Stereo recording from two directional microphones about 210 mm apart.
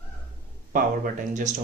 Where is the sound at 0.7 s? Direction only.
35° right (ahead or behind).